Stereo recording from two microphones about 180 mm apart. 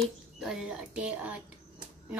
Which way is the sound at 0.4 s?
5° right (ahead or behind).